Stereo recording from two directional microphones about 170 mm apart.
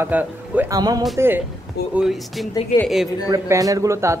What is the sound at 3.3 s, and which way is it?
Speech, 20° right (ahead or behind).